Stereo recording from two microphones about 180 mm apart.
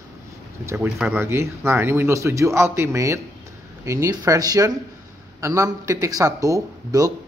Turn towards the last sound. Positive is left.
turn(degrees=-20)  # may be behind; listen again after turning